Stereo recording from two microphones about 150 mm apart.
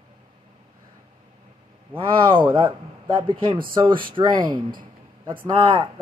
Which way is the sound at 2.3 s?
35° right (ahead or behind).